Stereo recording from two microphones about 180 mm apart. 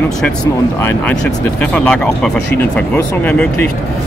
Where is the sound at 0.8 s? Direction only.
5° left (ahead or behind).